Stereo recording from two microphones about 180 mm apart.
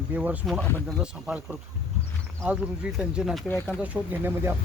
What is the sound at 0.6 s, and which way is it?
Speech, 5° left (ahead or behind).